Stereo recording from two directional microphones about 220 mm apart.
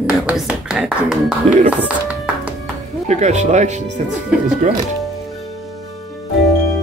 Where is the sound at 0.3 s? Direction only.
5° right (ahead or behind).